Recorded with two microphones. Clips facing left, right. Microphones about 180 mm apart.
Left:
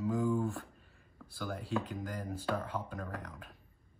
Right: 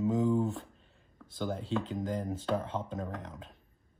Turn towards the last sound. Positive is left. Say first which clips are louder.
# right 4 dB
turn(degrees=-25)  # may be behind; listen again after turning